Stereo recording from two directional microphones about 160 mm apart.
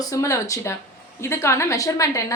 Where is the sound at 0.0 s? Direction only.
20° left (ahead or behind).